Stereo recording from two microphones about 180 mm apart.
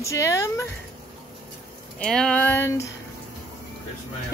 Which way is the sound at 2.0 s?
5° left (ahead or behind).